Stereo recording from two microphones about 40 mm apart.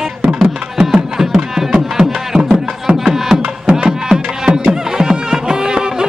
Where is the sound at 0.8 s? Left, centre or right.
Centre.